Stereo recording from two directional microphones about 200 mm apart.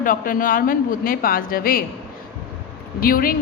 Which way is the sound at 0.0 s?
45° left (ahead or behind).